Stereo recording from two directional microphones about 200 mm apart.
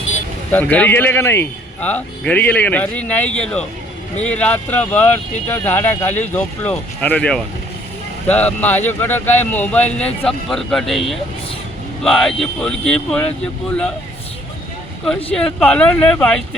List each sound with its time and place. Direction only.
0.5 s speech: 10° left (ahead or behind)
15.0 s speech: 5° left (ahead or behind)